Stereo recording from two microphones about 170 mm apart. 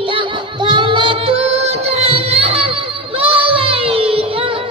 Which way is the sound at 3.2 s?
35° right (ahead or behind).